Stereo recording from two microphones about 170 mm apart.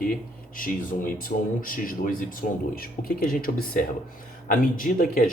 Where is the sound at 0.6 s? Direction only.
55° left (ahead or behind).